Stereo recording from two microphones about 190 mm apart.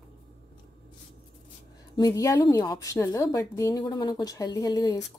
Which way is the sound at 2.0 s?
20° left (ahead or behind).